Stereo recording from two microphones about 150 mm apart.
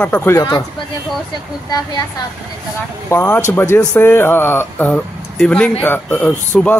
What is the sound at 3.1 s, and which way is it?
Speech, 15° left (ahead or behind).